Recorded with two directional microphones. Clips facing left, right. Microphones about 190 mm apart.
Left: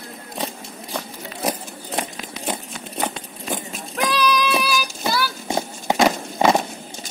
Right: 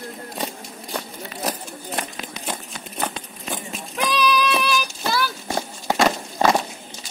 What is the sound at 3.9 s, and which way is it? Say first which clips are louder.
Child singing: left 1 dB; centre (ahead or behind).